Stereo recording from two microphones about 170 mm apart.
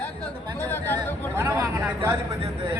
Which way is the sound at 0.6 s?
15° left (ahead or behind).